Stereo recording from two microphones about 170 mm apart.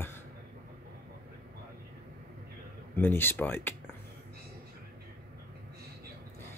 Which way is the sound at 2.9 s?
10° left (ahead or behind).